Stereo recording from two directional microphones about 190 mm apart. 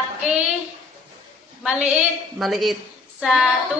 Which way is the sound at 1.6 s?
5° right (ahead or behind).